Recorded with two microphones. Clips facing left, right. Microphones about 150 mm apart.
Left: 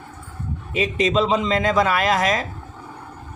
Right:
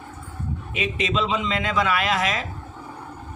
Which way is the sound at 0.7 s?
35° left (ahead or behind).